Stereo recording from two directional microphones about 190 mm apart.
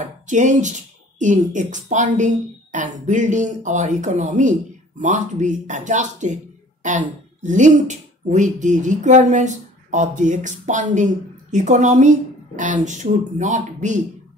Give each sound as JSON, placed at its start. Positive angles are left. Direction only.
{"t": 0.0, "sound": "speech", "side_deg": -40}